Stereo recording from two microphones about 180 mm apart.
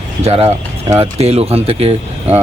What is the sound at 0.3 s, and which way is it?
A man's voice, 35° right (ahead or behind).